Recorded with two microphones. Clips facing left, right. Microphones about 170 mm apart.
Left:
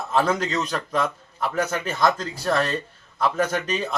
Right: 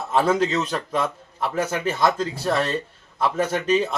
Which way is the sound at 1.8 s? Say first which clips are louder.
Right 1 dB; 5° right (ahead or behind).